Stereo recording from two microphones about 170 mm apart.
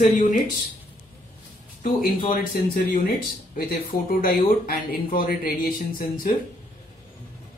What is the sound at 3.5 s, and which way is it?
Speech, 60° left (ahead or behind).